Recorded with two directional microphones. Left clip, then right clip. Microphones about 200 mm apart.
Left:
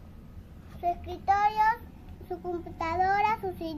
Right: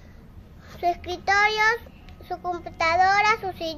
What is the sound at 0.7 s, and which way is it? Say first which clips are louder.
A child's voice: right 6 dB; 40° right (ahead or behind).